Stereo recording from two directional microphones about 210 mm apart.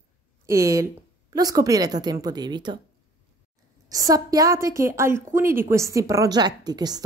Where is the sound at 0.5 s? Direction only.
15° right (ahead or behind).